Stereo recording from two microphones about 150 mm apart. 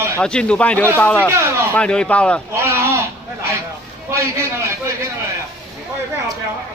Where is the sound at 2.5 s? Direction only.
20° right (ahead or behind).